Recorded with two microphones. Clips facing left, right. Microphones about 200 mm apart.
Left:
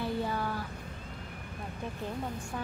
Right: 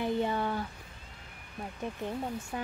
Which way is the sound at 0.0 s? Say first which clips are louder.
Right 3 dB; 20° right (ahead or behind).